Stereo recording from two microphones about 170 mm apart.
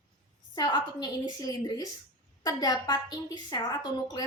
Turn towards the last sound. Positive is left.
turn(degrees=25)  # may be behind; listen again after turning